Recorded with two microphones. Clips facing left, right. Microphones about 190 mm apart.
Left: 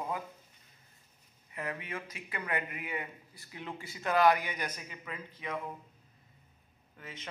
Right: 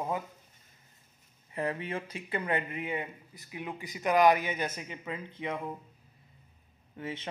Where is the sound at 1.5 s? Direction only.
30° right (ahead or behind).